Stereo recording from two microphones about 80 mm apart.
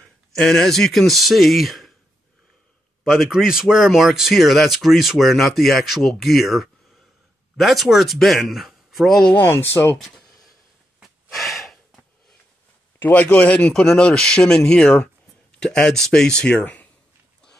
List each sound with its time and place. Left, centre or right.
0.3 s speech: centre
3.0 s speech: centre
9.3 s speech: left
9.7 s speech: left
9.9 s a sound: centre
11.0 s snort: centre
13.0 s speech: left